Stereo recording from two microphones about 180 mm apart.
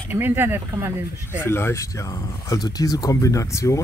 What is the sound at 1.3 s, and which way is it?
Speech, 15° left (ahead or behind).